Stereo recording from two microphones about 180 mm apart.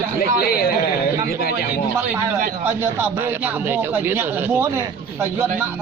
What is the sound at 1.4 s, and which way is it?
Speech, 60° left (ahead or behind).